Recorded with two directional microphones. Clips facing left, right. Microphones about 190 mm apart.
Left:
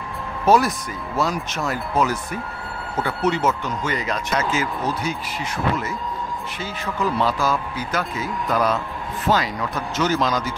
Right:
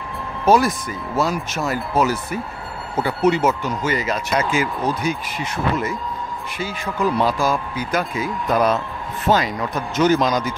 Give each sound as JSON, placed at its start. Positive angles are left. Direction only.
{"t": 0.5, "sound": "speech", "side_deg": 0}
{"t": 7.2, "sound": "speech", "side_deg": -15}